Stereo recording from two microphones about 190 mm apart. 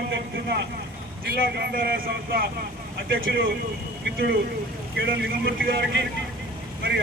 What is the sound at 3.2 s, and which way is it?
Speech, 65° right (ahead or behind).